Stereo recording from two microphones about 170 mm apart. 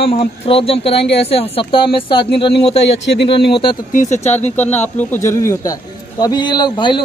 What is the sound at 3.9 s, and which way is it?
Speech, 45° left (ahead or behind).